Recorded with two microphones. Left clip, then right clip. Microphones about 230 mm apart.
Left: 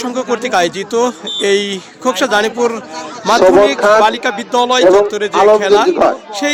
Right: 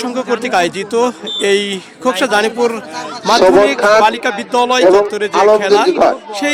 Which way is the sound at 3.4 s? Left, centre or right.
Right.